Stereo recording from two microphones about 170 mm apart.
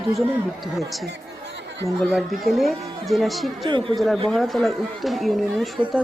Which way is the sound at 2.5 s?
Centre (ahead or behind).